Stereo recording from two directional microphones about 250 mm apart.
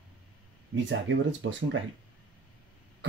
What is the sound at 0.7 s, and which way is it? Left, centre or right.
Speech, right.